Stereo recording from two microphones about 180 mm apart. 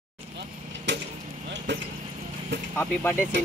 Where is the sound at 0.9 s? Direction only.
80° right.